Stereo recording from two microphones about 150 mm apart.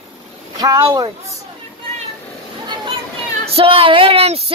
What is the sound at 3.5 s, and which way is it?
Speech, 40° right (ahead or behind).